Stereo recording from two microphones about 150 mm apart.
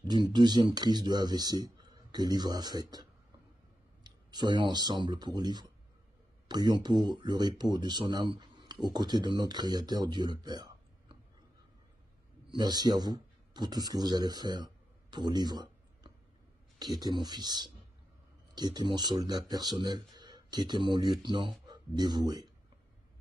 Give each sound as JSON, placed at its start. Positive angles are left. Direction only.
{"t": 0.1, "sound": "speech", "side_deg": -30}
{"t": 12.4, "sound": "a man's voice", "side_deg": -30}